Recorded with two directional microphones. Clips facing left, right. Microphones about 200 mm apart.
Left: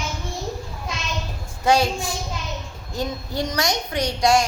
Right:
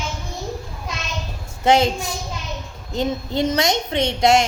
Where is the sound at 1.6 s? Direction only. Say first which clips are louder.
Right 3 dB; 20° right (ahead or behind).